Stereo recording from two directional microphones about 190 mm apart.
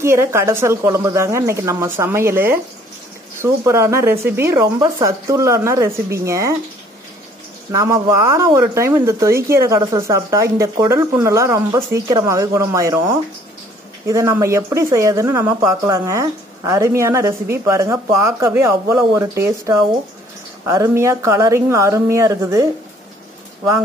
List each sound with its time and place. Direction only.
0.0 s speech: 15° right (ahead or behind)
7.7 s speech: 15° right (ahead or behind)